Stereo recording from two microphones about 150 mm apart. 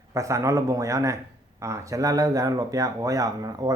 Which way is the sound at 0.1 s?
20° right (ahead or behind).